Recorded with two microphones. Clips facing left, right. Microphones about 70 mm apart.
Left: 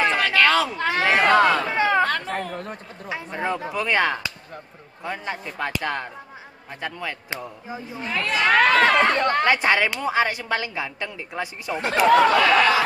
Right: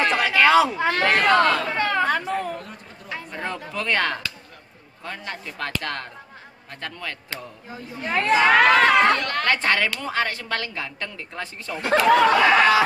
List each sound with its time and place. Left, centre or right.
0.2 s a sound: centre
0.9 s a woman's voice: centre
2.0 s speech: centre
3.1 s a woman's voice: centre
8.1 s speech: right
8.5 s speech: centre
9.1 s a woman's voice: left
12.3 s speech: centre